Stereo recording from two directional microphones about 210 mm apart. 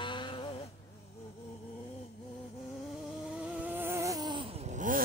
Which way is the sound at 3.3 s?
5° right (ahead or behind).